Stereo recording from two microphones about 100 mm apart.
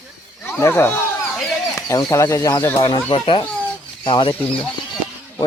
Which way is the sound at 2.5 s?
20° left (ahead or behind).